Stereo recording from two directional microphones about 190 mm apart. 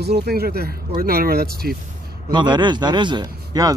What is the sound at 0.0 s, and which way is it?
Speech, 60° right (ahead or behind).